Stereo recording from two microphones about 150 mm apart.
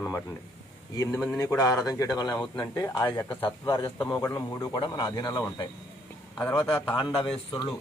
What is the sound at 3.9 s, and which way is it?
A man's voice, 20° left (ahead or behind).